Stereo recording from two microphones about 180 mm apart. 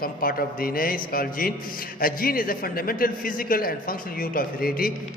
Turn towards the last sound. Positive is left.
turn(degrees=55)  # may be behind; listen again after turning